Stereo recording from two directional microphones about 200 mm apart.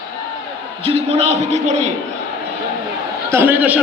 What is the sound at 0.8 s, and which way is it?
Speech, 30° right (ahead or behind).